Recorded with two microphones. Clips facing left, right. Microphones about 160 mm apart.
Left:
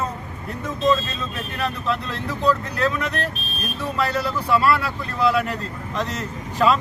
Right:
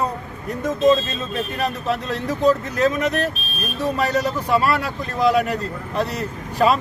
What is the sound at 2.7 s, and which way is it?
Speech, 15° right (ahead or behind).